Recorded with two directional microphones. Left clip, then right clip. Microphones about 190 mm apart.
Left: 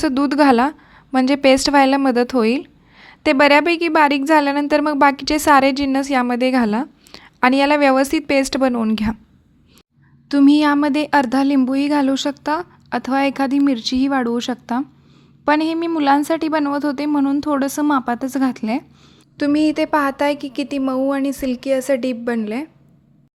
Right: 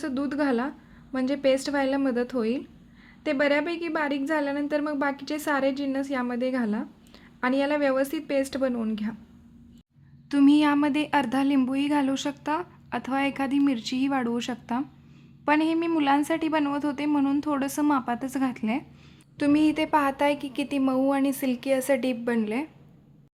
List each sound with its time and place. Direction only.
0.0 s a woman's voice: 45° left (ahead or behind)
10.2 s a woman's voice: 30° left (ahead or behind)